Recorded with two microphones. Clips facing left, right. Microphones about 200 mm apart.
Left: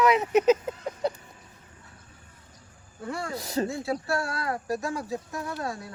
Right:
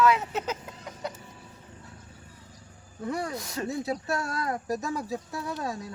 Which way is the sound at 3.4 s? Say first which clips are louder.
Left 6 dB; 35° left (ahead or behind).